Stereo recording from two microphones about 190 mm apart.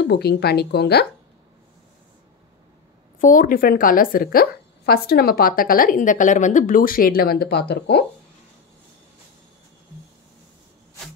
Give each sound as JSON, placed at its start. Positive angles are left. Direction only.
{"t": 0.0, "sound": "speech", "side_deg": 60}
{"t": 3.2, "sound": "a woman's voice", "side_deg": 45}